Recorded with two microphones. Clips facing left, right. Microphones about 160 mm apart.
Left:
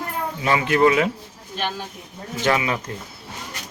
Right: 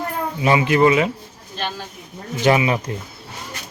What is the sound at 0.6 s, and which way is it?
Speech, 5° right (ahead or behind).